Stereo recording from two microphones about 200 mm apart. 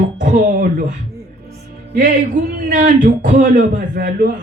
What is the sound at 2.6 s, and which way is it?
A man's voice, 40° right (ahead or behind).